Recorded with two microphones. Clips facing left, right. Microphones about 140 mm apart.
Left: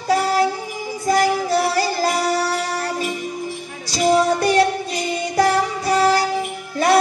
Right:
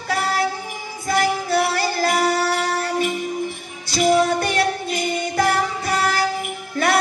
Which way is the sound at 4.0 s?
35° left (ahead or behind).